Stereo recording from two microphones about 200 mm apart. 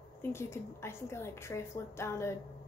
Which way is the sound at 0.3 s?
15° left (ahead or behind).